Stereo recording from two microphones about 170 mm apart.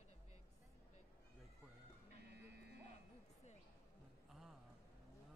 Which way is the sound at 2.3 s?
80° right.